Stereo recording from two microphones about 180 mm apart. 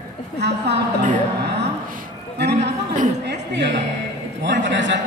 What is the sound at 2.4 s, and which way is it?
Speech, 70° right (ahead or behind).